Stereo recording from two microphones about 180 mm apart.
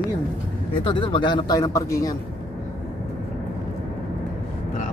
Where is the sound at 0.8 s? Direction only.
25° left (ahead or behind).